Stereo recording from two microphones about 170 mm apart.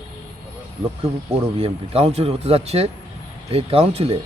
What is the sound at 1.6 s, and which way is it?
Speech, 35° right (ahead or behind).